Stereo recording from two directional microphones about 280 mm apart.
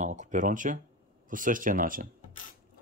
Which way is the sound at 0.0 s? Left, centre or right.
Right.